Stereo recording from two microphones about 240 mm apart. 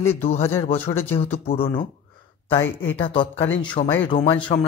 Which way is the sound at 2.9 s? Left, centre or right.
Left.